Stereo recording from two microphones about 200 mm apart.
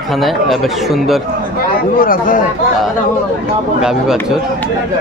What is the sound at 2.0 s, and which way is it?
Speech, 45° left (ahead or behind).